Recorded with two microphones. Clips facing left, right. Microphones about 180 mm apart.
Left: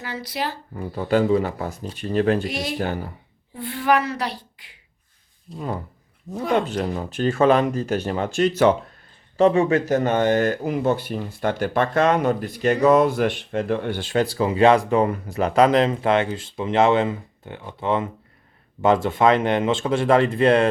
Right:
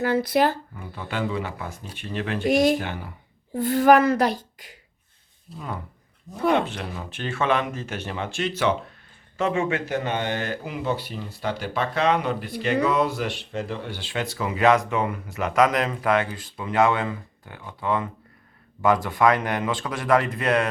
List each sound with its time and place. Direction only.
0.0 s speech: 55° right (ahead or behind)
0.8 s speech: 35° left (ahead or behind)
2.5 s speech: 45° right (ahead or behind)
2.7 s speech: 40° left (ahead or behind)
3.5 s speech: 45° right (ahead or behind)
5.5 s speech: 30° left (ahead or behind)